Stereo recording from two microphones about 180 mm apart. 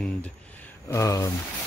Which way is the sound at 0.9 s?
15° left (ahead or behind).